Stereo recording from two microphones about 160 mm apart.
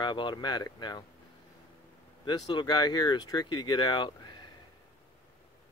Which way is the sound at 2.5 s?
25° left (ahead or behind).